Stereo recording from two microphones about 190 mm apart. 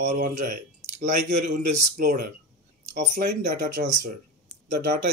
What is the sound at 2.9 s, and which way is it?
Speech, 50° right (ahead or behind).